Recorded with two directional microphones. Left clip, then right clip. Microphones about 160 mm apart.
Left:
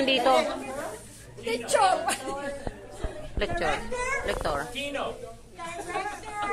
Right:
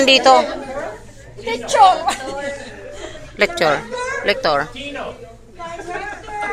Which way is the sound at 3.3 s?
30° right (ahead or behind).